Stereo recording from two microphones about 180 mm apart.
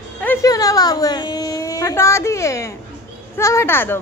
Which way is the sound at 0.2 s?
15° left (ahead or behind).